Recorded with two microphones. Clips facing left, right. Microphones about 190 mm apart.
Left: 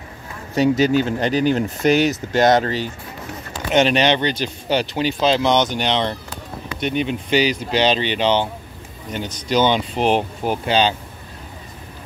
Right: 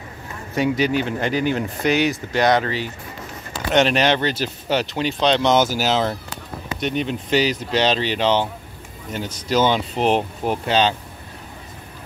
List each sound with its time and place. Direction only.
0.6 s speech: 40° left (ahead or behind)
1.8 s speech: 45° left (ahead or behind)
3.7 s speech: centre (ahead or behind)